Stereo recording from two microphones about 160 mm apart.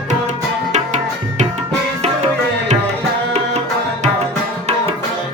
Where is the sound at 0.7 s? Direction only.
45° right (ahead or behind).